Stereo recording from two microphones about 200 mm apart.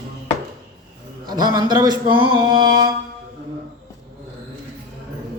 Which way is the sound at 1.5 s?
20° right (ahead or behind).